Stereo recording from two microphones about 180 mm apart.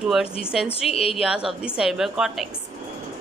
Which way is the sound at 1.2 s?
5° right (ahead or behind).